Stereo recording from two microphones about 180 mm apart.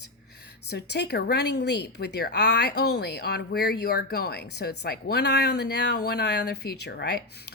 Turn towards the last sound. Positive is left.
turn(degrees=65)  # may be behind; listen again after turning